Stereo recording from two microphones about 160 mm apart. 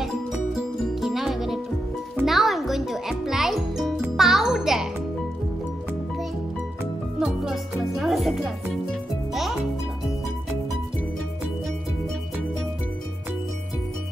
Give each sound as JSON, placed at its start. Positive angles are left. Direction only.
{"t": 0.6, "sound": "music", "side_deg": 0}
{"t": 7.2, "sound": "music", "side_deg": 0}